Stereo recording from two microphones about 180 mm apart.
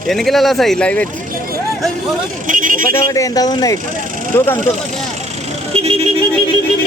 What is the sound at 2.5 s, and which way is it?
Speech, 50° right (ahead or behind).